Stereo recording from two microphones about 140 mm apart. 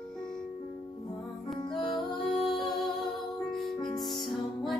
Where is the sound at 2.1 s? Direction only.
Centre (ahead or behind).